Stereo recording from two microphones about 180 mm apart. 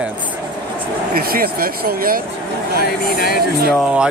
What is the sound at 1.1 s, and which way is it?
Speech, 55° right (ahead or behind).